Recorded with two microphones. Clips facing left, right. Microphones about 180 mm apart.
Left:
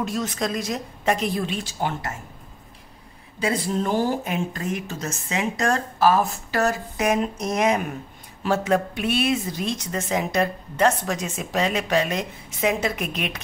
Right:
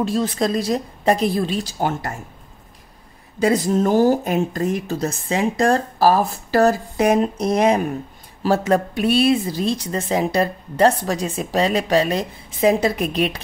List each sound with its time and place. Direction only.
0.0 s speech: 30° right (ahead or behind)
3.3 s speech: 40° right (ahead or behind)